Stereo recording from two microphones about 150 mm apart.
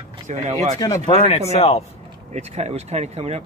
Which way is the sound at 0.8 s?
25° left (ahead or behind).